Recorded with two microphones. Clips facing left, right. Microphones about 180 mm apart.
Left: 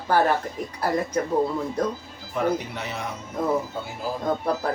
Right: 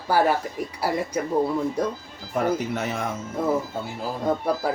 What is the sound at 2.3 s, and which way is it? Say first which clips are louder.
Speech: right 1 dB; 45° right (ahead or behind).